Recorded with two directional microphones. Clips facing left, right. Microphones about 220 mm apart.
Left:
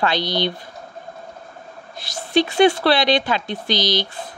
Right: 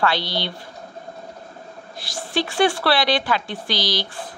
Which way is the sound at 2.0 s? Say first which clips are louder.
Left 6 dB; 20° left (ahead or behind).